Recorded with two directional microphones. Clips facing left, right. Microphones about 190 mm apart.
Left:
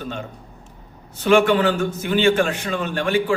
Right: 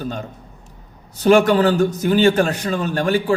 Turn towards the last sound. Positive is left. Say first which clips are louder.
# right 2 dB
turn(degrees=-40)  # may be behind; listen again after turning